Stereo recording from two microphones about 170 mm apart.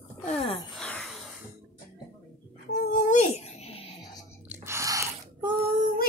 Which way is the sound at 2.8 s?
50° left (ahead or behind).